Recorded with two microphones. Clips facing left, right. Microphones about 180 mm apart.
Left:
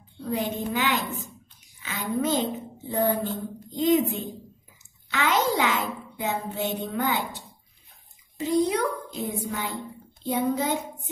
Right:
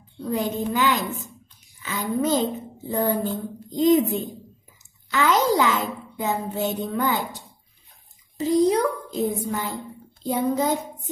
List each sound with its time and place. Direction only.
0.3 s a woman's voice: 40° right (ahead or behind)
8.4 s a woman's voice: 35° right (ahead or behind)